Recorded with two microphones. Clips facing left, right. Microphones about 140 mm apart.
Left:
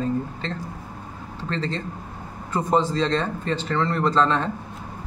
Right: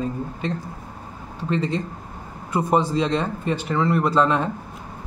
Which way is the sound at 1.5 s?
15° right (ahead or behind).